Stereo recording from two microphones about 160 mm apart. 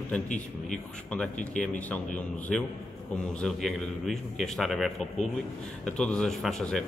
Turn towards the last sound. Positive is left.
turn(degrees=5)  # may be behind; listen again after turning